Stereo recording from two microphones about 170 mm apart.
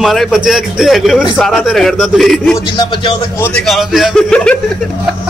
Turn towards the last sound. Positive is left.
turn(degrees=5)  # may be behind; listen again after turning